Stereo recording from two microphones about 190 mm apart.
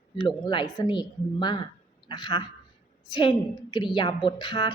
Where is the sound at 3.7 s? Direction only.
25° left (ahead or behind).